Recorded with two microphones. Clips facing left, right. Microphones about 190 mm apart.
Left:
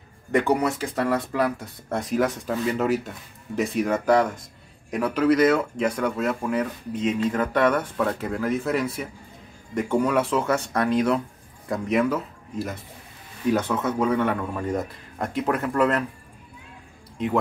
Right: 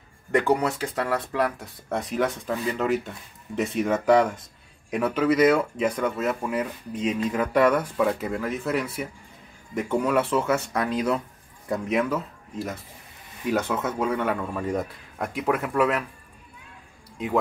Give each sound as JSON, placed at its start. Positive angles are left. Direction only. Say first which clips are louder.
{"t": 0.3, "sound": "speech", "louder": "left 1 dB", "side_deg": 0}